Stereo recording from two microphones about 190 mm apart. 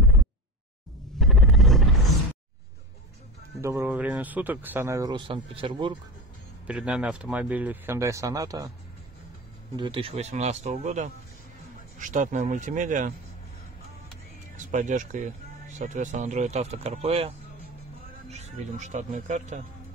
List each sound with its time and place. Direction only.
1.2 s a sound: centre (ahead or behind)
3.6 s speech: 10° right (ahead or behind); by 5.9 s 25° right (ahead or behind)
6.7 s speech: 5° right (ahead or behind)
9.8 s speech: 25° right (ahead or behind); by 13.1 s 45° right (ahead or behind)
14.6 s speech: 40° right (ahead or behind)
18.3 s speech: 35° right (ahead or behind)